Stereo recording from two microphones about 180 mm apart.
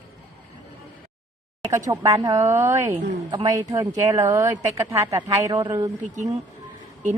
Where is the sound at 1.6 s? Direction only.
15° right (ahead or behind).